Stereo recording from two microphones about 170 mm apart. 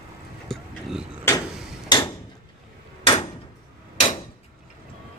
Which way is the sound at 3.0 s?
35° left (ahead or behind).